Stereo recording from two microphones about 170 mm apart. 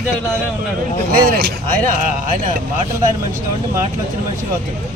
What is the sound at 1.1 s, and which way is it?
Speech, 60° right (ahead or behind).